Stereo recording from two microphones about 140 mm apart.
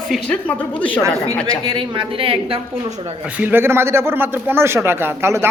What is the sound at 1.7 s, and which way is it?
A woman's voice, 35° right (ahead or behind).